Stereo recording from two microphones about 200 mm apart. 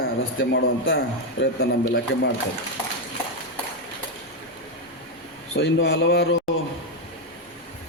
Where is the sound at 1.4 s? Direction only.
55° left (ahead or behind).